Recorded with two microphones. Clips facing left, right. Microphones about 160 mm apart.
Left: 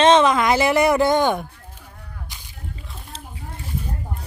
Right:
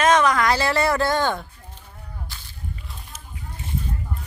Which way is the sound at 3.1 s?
30° left (ahead or behind).